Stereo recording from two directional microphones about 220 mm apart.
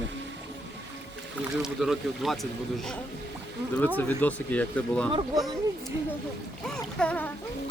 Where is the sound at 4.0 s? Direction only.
5° left (ahead or behind).